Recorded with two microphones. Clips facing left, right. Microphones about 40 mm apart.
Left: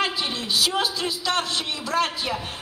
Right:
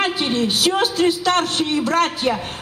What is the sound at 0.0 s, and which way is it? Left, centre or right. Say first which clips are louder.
A man's voice: right 6 dB; right.